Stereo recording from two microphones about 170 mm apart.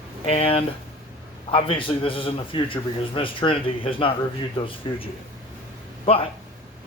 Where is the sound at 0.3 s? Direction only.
35° left (ahead or behind).